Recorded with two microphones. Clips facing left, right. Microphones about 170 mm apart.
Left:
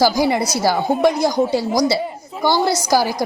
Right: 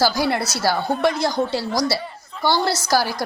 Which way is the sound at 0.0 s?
15° left (ahead or behind).